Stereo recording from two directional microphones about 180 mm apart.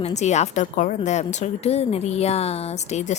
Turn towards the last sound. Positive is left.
turn(degrees=40)  # may be behind; listen again after turning